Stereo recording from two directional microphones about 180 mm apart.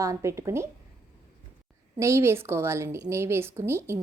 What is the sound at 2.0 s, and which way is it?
Speech, 15° right (ahead or behind).